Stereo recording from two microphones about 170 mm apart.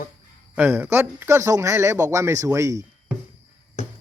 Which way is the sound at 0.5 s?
10° right (ahead or behind).